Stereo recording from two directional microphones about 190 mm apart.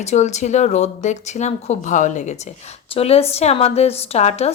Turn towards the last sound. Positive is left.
turn(degrees=35)  # may be behind; listen again after turning